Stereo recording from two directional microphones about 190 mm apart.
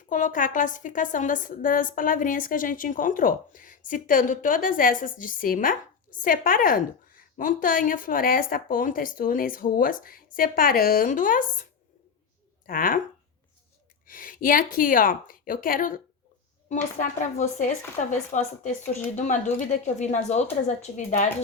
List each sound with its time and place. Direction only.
0.1 s a woman's voice: 45° left (ahead or behind)
12.6 s a woman's voice: 45° left (ahead or behind)
14.1 s a woman's voice: 45° left (ahead or behind)